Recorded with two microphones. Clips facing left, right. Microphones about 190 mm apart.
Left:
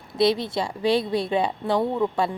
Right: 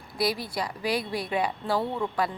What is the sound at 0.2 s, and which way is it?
A woman's voice, 25° left (ahead or behind).